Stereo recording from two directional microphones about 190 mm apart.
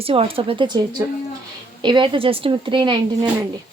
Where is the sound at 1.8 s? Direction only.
25° right (ahead or behind).